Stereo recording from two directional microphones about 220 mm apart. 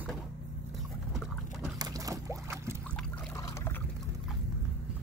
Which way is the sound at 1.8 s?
15° right (ahead or behind).